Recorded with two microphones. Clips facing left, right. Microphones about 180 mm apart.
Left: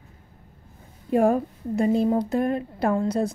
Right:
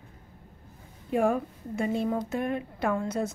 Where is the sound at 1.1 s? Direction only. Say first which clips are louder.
Left 5 dB; 35° left (ahead or behind).